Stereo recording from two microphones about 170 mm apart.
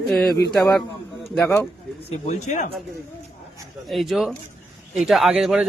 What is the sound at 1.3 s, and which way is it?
Speech, 5° left (ahead or behind).